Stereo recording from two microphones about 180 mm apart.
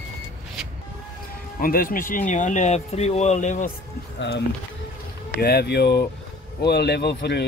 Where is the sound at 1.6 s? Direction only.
55° left (ahead or behind).